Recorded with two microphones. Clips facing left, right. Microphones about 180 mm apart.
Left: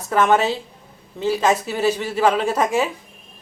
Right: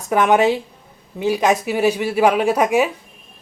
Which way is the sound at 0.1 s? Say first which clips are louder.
Right 3 dB; 15° right (ahead or behind).